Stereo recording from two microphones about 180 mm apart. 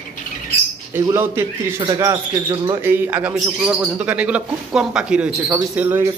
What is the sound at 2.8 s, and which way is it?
Speech, 10° right (ahead or behind).